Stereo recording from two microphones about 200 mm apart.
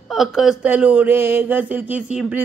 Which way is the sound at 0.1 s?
Centre (ahead or behind).